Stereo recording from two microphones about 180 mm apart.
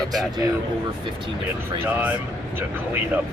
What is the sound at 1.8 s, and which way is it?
Speech, 10° right (ahead or behind).